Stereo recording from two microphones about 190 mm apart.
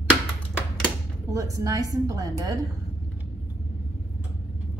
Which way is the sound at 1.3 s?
20° right (ahead or behind).